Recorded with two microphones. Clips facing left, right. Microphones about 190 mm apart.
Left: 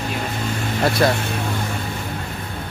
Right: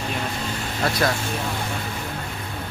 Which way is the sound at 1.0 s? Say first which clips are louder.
Left 5 dB; 30° left (ahead or behind).